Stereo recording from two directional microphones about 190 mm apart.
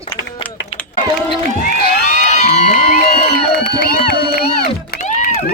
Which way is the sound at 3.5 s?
55° left (ahead or behind).